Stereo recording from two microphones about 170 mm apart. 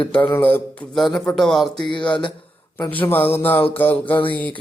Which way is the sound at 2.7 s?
10° left (ahead or behind).